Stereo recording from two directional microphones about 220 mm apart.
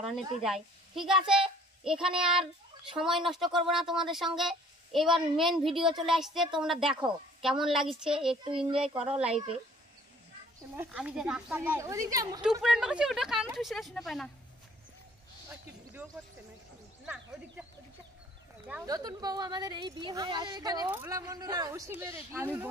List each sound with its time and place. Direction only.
0.0 s a woman's voice: centre (ahead or behind)
8.5 s child singing: 25° right (ahead or behind)
9.0 s a woman's voice: 5° right (ahead or behind)
10.8 s a woman's voice: 5° right (ahead or behind)
12.6 s a woman's voice: 5° right (ahead or behind)
17.0 s a sound: 5° right (ahead or behind)
18.9 s a woman's voice: 15° right (ahead or behind)